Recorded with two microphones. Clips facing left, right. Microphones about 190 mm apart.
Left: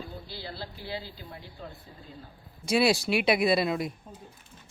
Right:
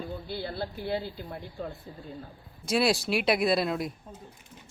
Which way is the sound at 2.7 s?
Centre (ahead or behind).